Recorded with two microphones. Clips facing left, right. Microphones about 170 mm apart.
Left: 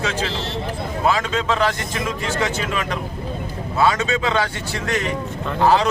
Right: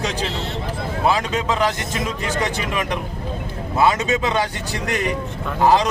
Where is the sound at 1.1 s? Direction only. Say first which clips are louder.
Even; 15° right (ahead or behind).